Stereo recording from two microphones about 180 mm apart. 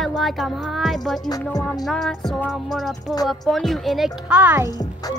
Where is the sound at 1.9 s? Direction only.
Centre (ahead or behind).